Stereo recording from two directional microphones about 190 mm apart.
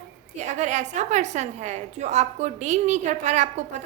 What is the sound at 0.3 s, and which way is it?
A woman's voice, 40° right (ahead or behind).